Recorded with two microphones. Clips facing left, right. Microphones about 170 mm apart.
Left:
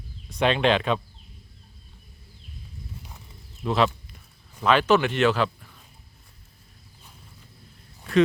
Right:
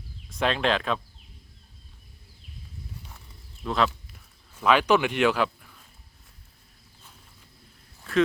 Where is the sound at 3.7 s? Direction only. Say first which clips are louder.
Left 3 dB; 5° left (ahead or behind).